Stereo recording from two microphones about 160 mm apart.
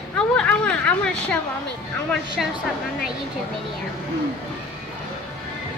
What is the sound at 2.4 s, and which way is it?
Speech, centre (ahead or behind).